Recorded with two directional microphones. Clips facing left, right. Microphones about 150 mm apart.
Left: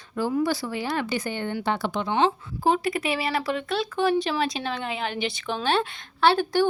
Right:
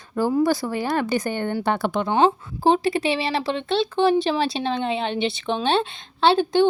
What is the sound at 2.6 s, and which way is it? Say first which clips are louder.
A woman's voice: right 4 dB; 30° right (ahead or behind).